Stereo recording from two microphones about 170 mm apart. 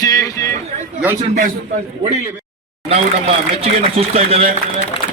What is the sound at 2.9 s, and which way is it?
Speech, 35° right (ahead or behind).